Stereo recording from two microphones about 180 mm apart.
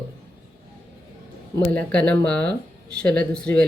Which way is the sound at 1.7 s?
5° left (ahead or behind).